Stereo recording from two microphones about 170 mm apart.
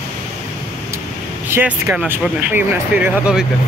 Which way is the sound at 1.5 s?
10° right (ahead or behind).